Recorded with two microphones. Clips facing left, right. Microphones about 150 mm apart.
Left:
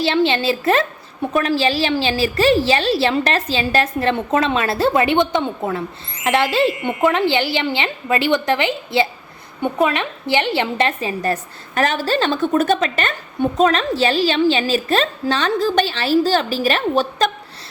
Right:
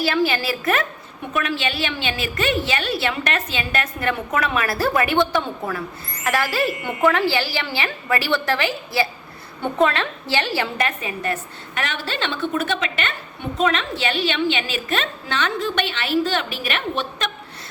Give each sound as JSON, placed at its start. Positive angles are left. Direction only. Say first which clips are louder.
{"t": 0.0, "sound": "a woman's voice", "louder": "left 4 dB", "side_deg": 25}